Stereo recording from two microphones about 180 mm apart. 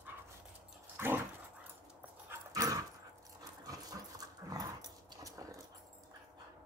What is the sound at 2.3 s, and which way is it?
Dog, 20° right (ahead or behind).